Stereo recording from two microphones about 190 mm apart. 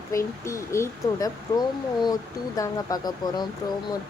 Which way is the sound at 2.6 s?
20° left (ahead or behind).